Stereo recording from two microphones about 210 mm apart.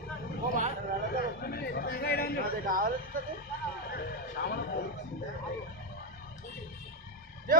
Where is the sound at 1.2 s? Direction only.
45° left (ahead or behind).